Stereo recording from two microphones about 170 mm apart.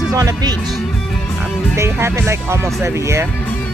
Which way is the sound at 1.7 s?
15° right (ahead or behind).